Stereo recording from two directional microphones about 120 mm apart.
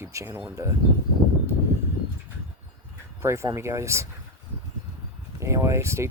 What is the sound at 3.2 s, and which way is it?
Speech, 25° right (ahead or behind).